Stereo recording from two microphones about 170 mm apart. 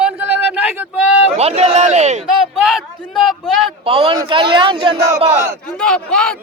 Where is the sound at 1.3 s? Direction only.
40° right (ahead or behind).